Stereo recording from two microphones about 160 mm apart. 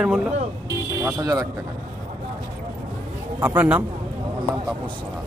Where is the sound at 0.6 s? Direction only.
20° right (ahead or behind).